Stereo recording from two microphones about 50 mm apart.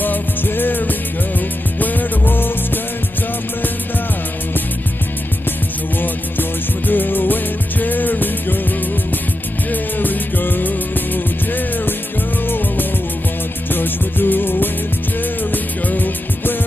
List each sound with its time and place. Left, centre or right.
0.0 s music: left
6.9 s music: left
12.4 s music: left